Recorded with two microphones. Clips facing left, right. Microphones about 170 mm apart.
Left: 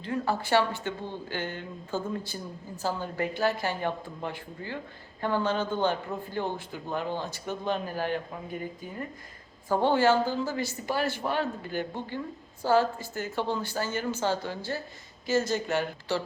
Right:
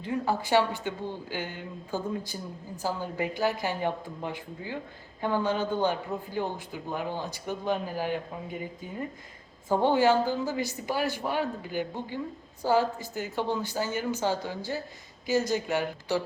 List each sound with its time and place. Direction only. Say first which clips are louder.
0.0 s speech: right 1 dB; 15° right (ahead or behind)